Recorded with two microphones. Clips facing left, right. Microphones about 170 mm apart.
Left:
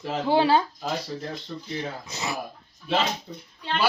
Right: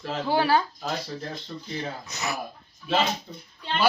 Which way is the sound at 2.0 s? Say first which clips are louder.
Even; 25° left (ahead or behind).